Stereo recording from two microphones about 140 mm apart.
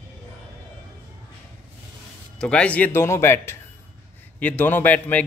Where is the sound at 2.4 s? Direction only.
5° left (ahead or behind).